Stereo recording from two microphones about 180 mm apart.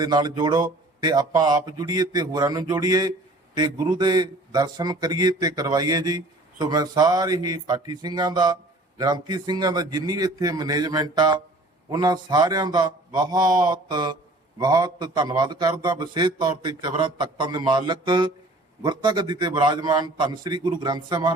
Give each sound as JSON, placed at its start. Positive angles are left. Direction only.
{"t": 0.0, "sound": "speech", "side_deg": -20}